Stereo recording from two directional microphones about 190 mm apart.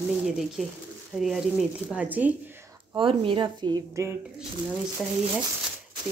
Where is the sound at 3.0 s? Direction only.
25° right (ahead or behind).